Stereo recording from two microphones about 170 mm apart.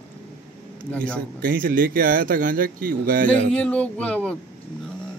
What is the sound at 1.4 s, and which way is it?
Speech, 60° right (ahead or behind).